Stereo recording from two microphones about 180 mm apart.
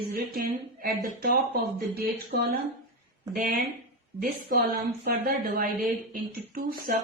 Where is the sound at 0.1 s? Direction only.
55° right (ahead or behind).